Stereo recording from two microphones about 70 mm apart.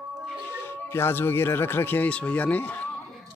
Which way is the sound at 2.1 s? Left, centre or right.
Left.